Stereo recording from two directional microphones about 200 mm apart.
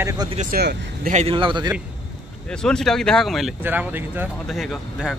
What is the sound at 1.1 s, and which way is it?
Speech, 30° right (ahead or behind).